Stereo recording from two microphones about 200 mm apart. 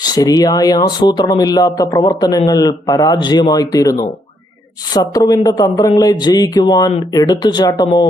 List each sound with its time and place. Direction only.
0.0 s speech: 20° left (ahead or behind)